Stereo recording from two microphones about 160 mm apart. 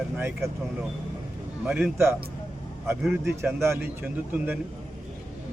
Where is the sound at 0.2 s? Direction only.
15° right (ahead or behind).